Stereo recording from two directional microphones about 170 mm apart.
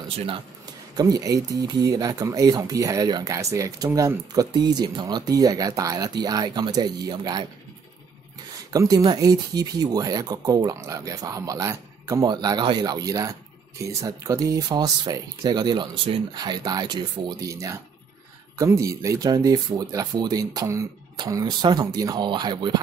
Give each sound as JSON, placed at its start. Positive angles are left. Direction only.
{"t": 0.9, "sound": "speech", "side_deg": -20}
{"t": 8.7, "sound": "speech", "side_deg": -20}